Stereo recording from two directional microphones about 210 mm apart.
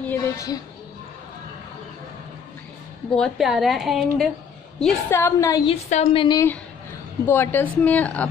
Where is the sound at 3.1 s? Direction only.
Centre (ahead or behind); by 5.7 s 15° left (ahead or behind).